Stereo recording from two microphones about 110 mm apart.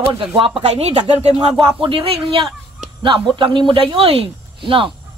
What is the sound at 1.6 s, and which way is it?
A man's voice, 60° right (ahead or behind).